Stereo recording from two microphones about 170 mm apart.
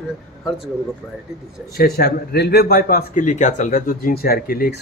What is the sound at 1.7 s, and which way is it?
A man's voice, 65° left (ahead or behind).